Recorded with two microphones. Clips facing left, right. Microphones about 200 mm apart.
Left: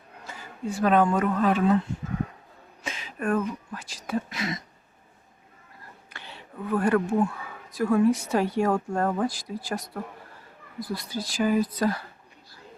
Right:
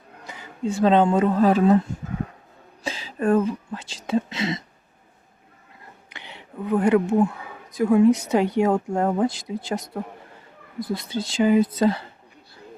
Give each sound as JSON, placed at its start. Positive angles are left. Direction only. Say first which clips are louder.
{"t": 0.3, "sound": "speech", "louder": "right 5 dB", "side_deg": -20}
{"t": 2.8, "sound": "speech", "louder": "right 6 dB", "side_deg": -30}
{"t": 6.1, "sound": "a sound", "louder": "right 2 dB", "side_deg": -20}
{"t": 7.7, "sound": "speech", "louder": "right 5 dB", "side_deg": -20}